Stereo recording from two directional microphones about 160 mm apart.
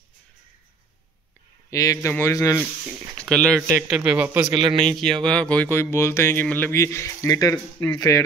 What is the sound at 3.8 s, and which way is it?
Speech, 5° right (ahead or behind).